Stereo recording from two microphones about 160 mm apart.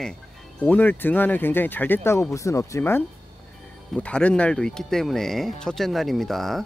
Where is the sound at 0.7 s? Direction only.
10° left (ahead or behind).